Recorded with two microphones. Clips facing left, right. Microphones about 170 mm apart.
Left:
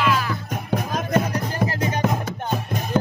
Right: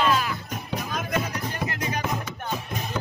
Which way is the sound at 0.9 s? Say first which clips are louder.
Left 6 dB; 45° left (ahead or behind).